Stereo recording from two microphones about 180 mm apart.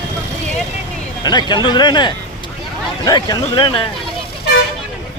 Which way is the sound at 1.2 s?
25° left (ahead or behind).